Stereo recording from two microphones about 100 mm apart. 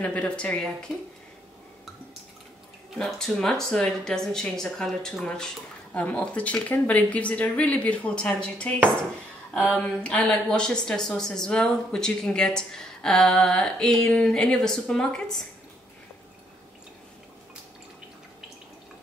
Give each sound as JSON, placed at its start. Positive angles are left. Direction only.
{"t": 0.0, "sound": "speech", "side_deg": 10}
{"t": 3.0, "sound": "speech", "side_deg": 5}